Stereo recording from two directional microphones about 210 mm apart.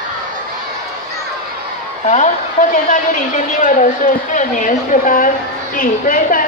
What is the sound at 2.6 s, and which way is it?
A woman's voice, 35° left (ahead or behind).